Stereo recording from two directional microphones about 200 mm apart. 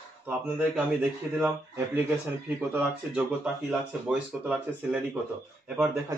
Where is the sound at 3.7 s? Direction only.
5° right (ahead or behind).